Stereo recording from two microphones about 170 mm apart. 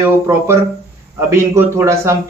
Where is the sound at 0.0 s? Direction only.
15° right (ahead or behind).